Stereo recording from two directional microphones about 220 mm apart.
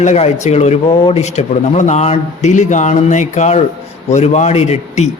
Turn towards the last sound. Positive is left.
turn(degrees=30)  # may be behind; listen again after turning